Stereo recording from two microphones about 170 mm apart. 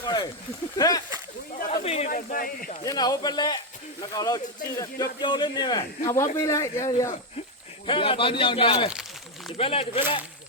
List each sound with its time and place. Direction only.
0.0 s a sound: 25° left (ahead or behind)
0.8 s speech: 20° left (ahead or behind)
1.7 s speech: 35° left (ahead or behind)
2.0 s speech: 55° left (ahead or behind)
2.8 s speech: 20° left (ahead or behind)
7.9 s speech: 30° left (ahead or behind)